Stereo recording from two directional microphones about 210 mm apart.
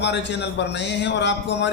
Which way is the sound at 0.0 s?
55° left (ahead or behind).